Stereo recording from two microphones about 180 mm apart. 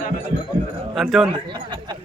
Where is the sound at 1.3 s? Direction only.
25° right (ahead or behind).